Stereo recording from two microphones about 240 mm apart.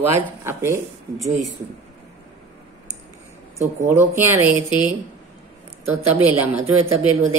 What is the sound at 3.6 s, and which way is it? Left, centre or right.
Speech, centre.